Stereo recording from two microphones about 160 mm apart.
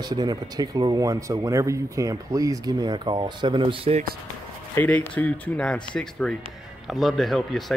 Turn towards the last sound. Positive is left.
turn(degrees=0)  # may be behind; listen again after turning